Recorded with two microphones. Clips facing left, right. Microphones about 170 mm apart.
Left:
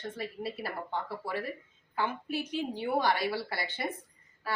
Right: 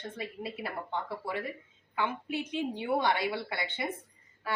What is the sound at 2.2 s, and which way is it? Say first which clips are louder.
A woman's voice: even; 20° right (ahead or behind).